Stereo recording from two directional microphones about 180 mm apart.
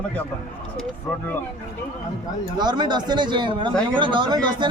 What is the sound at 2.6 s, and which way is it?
A man's voice, 25° right (ahead or behind).